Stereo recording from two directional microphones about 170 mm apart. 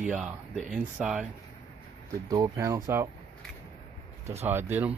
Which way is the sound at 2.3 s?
20° right (ahead or behind).